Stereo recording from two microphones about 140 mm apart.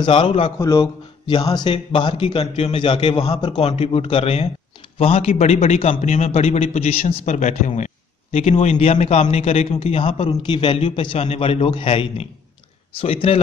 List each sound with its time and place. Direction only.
0.0 s speech: 40° left (ahead or behind)
0.6 s a man's voice: 25° left (ahead or behind); by 7.3 s 50° left (ahead or behind)
7.3 s a man's voice: 60° left (ahead or behind)